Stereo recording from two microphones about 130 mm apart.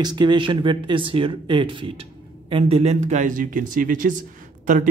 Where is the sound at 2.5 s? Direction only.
50° right (ahead or behind).